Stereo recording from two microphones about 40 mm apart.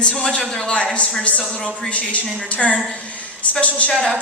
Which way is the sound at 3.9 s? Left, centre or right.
Left.